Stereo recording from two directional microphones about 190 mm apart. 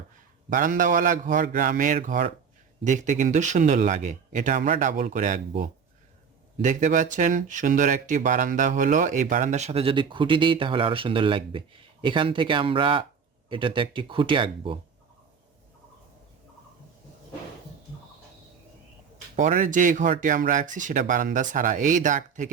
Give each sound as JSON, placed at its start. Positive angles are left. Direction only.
{"t": 0.5, "sound": "speech", "side_deg": -45}
{"t": 19.4, "sound": "speech", "side_deg": -40}